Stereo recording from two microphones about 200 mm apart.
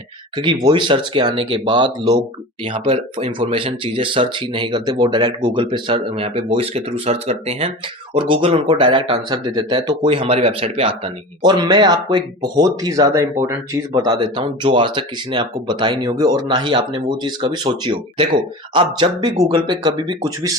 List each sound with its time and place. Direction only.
0.3 s speech: 20° right (ahead or behind)